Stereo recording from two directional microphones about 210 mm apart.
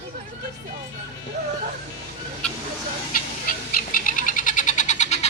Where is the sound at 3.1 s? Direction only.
45° left (ahead or behind).